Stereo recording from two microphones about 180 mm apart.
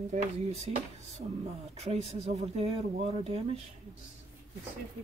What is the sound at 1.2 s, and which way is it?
Speech, 35° right (ahead or behind).